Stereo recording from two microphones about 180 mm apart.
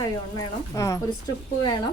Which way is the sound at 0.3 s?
15° left (ahead or behind).